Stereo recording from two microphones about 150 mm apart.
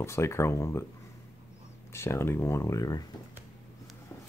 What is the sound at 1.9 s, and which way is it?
Speech, 15° left (ahead or behind).